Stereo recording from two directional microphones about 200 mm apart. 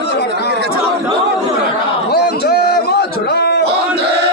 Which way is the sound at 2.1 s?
50° left (ahead or behind).